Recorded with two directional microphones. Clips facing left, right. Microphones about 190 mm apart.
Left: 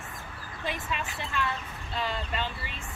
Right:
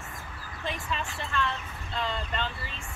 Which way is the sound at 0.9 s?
5° left (ahead or behind).